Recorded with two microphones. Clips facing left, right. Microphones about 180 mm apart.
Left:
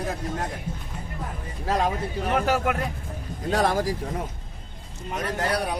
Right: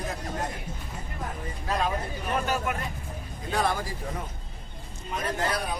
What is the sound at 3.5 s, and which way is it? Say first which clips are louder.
Speech: left 4 dB; 90° left.